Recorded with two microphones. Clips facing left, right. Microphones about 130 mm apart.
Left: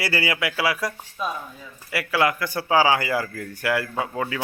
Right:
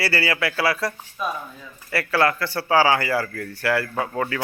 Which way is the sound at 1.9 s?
15° left (ahead or behind).